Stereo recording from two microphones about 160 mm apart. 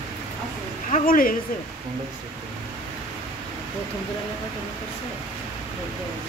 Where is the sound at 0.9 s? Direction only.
60° left (ahead or behind).